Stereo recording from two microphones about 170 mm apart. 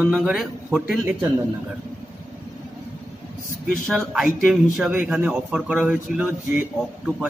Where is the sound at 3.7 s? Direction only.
Centre (ahead or behind).